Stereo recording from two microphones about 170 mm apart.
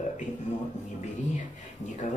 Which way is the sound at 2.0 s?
45° left (ahead or behind).